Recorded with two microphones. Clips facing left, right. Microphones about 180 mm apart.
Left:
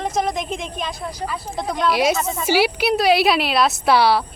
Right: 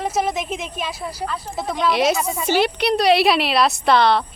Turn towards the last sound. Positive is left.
turn(degrees=10)  # may be behind; listen again after turning